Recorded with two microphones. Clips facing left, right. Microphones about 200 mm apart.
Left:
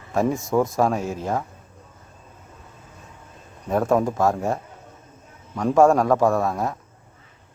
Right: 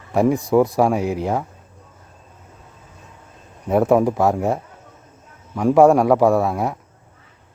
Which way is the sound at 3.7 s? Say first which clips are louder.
Right 5 dB; 15° right (ahead or behind).